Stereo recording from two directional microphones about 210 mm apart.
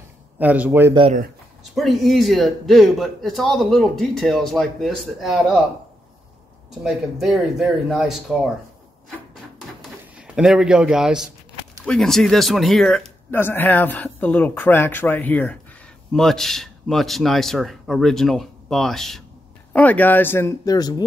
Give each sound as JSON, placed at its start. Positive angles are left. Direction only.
{"t": 0.4, "sound": "speech", "side_deg": -5}
{"t": 0.9, "sound": "speech", "side_deg": -25}
{"t": 1.8, "sound": "a man's voice", "side_deg": 0}
{"t": 6.7, "sound": "a man's voice", "side_deg": 0}
{"t": 10.1, "sound": "a man's voice", "side_deg": -5}